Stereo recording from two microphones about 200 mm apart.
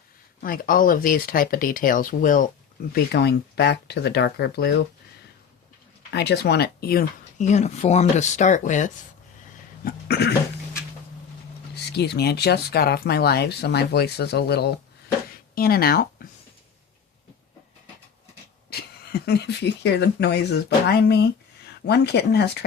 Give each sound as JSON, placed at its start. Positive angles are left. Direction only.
{"t": 0.4, "sound": "speech", "side_deg": 45}
{"t": 2.9, "sound": "speech", "side_deg": 55}
{"t": 6.1, "sound": "speech", "side_deg": 55}
{"t": 9.8, "sound": "speech", "side_deg": 55}
{"t": 11.7, "sound": "speech", "side_deg": 55}
{"t": 18.7, "sound": "speech", "side_deg": 55}